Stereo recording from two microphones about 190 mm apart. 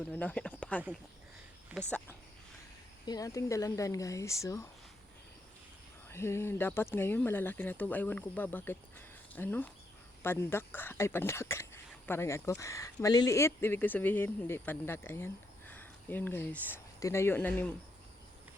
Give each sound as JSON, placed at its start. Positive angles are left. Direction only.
{"t": 0.0, "sound": "speech", "side_deg": 10}
{"t": 3.1, "sound": "speech", "side_deg": 20}
{"t": 6.1, "sound": "speech", "side_deg": 15}